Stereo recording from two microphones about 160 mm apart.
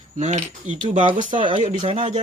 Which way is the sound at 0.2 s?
45° right (ahead or behind).